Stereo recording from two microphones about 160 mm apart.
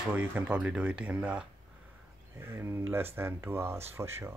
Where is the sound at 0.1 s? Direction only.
10° right (ahead or behind).